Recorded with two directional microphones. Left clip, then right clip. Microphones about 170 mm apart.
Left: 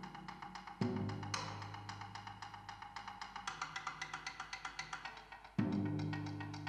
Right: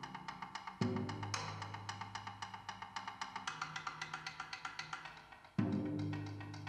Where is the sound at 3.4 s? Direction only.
10° left (ahead or behind).